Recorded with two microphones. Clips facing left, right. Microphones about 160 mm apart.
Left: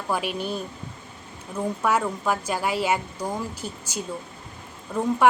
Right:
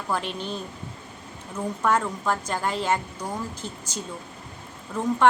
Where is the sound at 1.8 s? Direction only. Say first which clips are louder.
Right 1 dB; 10° left (ahead or behind).